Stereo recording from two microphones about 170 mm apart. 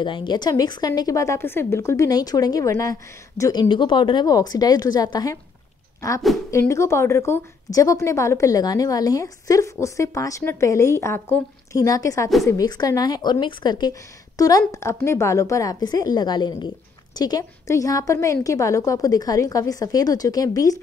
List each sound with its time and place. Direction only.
0.0 s a woman's voice: 30° left (ahead or behind)